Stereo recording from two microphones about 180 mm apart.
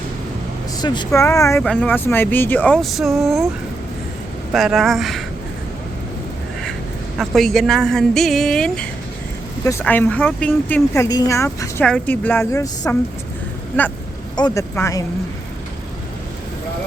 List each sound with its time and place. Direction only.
0.8 s speech: 25° left (ahead or behind)
1.6 s speech: 5° left (ahead or behind)
4.5 s speech: centre (ahead or behind)
7.2 s speech: centre (ahead or behind); by 15.0 s 15° left (ahead or behind)